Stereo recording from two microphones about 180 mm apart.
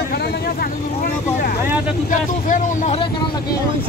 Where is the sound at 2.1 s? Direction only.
45° left (ahead or behind).